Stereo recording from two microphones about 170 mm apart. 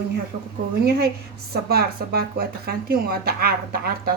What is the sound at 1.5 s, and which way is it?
Speech, 65° right (ahead or behind).